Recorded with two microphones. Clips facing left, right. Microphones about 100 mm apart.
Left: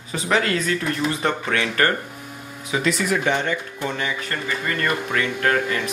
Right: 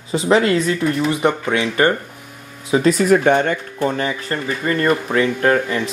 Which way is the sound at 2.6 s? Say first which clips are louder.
Right 8 dB; 35° right (ahead or behind).